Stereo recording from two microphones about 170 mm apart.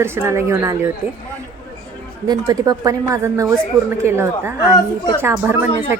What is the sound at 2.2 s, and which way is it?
A woman's voice, 20° right (ahead or behind).